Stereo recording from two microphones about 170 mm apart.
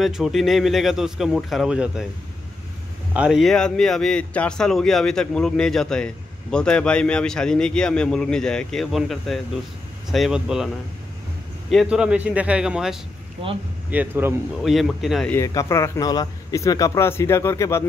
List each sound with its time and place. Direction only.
0.0 s a man's voice: centre (ahead or behind)
3.1 s a man's voice: 5° right (ahead or behind)
11.7 s a man's voice: 5° right (ahead or behind)
15.3 s a man's voice: 20° left (ahead or behind)